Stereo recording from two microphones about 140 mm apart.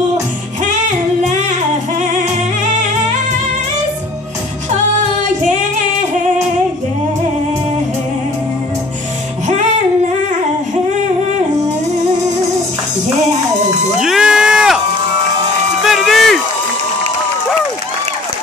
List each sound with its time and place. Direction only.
5.2 s music: 60° right (ahead or behind)
13.9 s a sound: 5° right (ahead or behind)
15.8 s music: centre (ahead or behind)